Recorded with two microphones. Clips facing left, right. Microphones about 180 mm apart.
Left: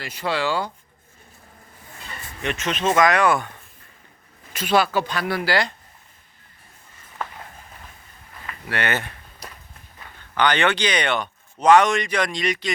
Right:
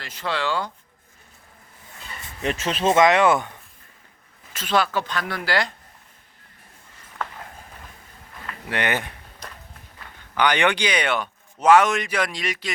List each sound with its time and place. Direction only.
0.0 s speech: 10° left (ahead or behind)
2.4 s speech: 30° right (ahead or behind)
4.5 s speech: 10° left (ahead or behind)
8.7 s speech: 15° right (ahead or behind)
10.3 s speech: 10° right (ahead or behind)